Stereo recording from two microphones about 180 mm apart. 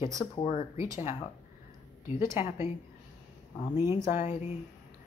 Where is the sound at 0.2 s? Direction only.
35° left (ahead or behind).